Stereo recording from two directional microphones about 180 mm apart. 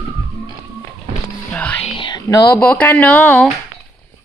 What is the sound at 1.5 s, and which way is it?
Music, 10° left (ahead or behind).